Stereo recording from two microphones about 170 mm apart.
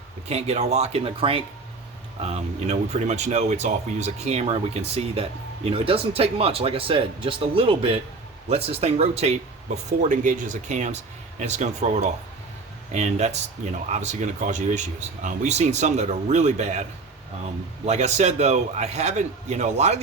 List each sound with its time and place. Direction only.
0.3 s speech: 40° right (ahead or behind)
17.8 s speech: 40° right (ahead or behind)